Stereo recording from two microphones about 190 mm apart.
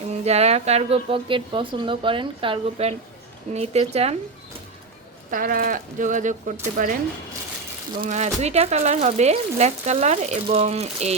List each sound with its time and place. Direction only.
0.1 s speech: 35° right (ahead or behind)
5.3 s speech: 45° right (ahead or behind)
8.0 s speech: 35° right (ahead or behind)